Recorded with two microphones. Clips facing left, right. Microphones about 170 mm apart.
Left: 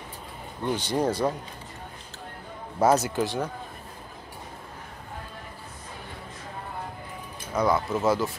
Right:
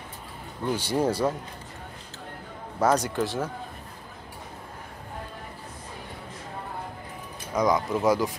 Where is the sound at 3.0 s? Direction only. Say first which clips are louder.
Even; centre (ahead or behind).